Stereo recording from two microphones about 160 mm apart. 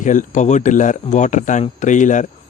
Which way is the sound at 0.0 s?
50° left (ahead or behind).